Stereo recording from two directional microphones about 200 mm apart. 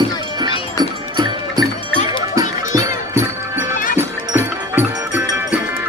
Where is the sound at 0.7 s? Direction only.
20° right (ahead or behind).